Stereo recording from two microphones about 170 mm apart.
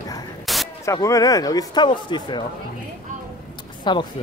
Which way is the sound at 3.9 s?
25° left (ahead or behind).